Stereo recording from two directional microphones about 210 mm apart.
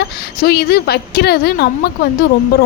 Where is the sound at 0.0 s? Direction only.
50° left (ahead or behind).